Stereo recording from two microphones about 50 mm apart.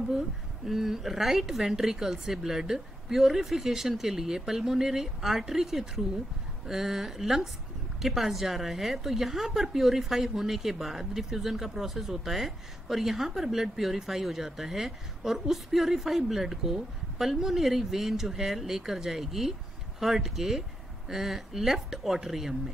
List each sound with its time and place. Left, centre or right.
0.7 s a woman's voice: centre